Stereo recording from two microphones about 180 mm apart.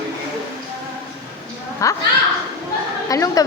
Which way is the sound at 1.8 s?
20° left (ahead or behind).